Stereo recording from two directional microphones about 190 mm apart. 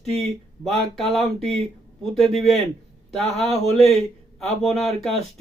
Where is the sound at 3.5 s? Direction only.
30° right (ahead or behind).